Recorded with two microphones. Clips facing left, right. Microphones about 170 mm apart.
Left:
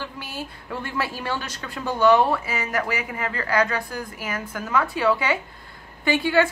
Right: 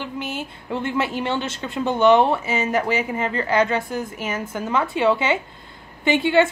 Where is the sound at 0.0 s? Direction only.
20° right (ahead or behind).